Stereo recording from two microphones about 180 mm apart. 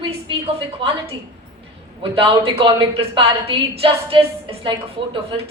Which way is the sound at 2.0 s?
30° right (ahead or behind).